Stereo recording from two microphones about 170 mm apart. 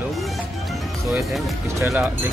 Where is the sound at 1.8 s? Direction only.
15° right (ahead or behind).